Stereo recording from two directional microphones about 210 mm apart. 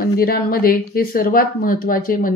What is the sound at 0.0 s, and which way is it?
Speech, 45° left (ahead or behind).